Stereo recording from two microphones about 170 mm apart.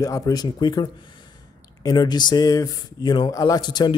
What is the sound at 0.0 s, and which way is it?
Speech, 20° left (ahead or behind).